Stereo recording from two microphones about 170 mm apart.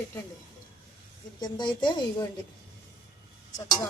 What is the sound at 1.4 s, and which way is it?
Speech, 25° left (ahead or behind).